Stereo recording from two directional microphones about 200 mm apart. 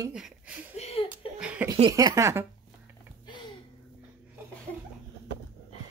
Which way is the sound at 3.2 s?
20° left (ahead or behind).